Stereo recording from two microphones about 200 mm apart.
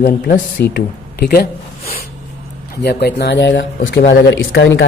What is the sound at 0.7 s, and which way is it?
Speech, 50° left (ahead or behind).